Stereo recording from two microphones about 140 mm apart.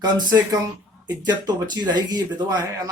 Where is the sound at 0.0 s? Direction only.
30° right (ahead or behind).